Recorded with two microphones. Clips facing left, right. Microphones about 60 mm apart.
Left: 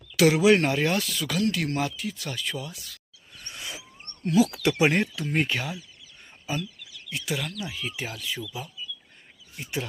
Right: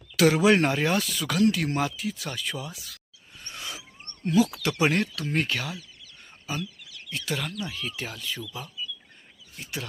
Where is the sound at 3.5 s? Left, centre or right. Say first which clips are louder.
Right 1 dB; centre.